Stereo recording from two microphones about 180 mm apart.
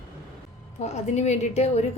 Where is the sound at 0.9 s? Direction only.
40° left (ahead or behind).